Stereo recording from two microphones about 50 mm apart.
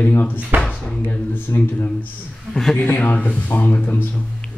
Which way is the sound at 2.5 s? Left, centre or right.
Centre.